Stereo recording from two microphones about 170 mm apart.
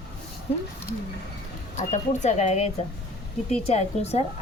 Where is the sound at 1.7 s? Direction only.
40° left (ahead or behind).